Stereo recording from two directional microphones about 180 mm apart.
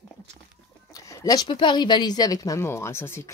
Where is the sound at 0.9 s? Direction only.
20° left (ahead or behind).